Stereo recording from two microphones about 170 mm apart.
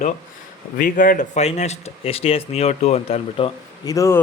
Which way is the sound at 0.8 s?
50° left (ahead or behind).